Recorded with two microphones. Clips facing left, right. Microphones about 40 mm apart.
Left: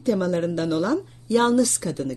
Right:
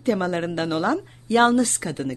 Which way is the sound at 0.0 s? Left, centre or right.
Right.